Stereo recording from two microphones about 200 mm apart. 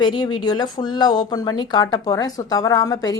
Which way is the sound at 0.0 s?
20° left (ahead or behind).